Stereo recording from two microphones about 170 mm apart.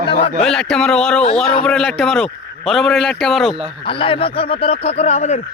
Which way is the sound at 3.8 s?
30° left (ahead or behind).